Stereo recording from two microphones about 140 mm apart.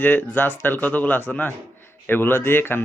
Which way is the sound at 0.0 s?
15° left (ahead or behind).